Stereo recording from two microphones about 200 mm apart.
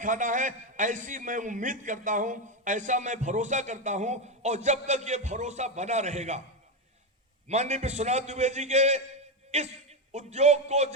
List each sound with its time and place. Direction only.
0.0 s a man's voice: 40° right (ahead or behind)
7.4 s a man's voice: 35° right (ahead or behind)